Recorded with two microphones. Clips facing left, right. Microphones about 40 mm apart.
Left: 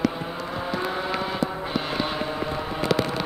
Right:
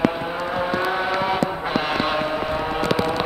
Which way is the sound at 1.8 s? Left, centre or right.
Right.